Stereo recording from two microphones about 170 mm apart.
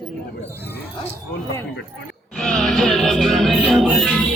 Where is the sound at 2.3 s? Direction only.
Centre (ahead or behind).